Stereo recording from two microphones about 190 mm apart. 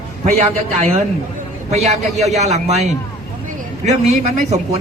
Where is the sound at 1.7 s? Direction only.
35° right (ahead or behind).